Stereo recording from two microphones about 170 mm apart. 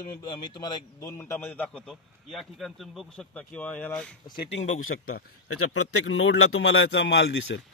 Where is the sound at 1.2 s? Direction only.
15° left (ahead or behind).